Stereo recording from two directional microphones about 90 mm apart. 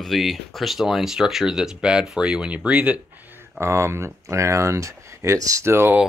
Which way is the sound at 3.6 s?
30° right (ahead or behind).